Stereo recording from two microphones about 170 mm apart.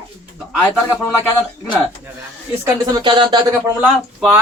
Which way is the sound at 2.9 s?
25° right (ahead or behind).